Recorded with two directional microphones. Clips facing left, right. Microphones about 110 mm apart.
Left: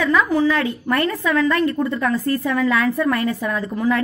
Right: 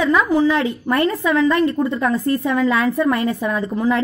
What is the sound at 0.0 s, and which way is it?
A woman's voice, 20° right (ahead or behind).